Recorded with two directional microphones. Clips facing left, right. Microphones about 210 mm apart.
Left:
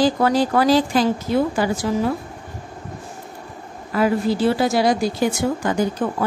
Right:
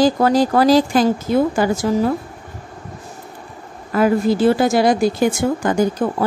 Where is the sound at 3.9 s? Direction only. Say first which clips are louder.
Right 3 dB; 50° right (ahead or behind).